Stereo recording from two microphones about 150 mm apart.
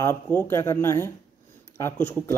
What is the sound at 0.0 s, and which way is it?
A man's voice, 15° left (ahead or behind).